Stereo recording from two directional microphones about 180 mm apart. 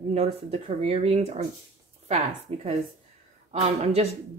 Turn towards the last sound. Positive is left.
turn(degrees=-35)  # may be behind; listen again after turning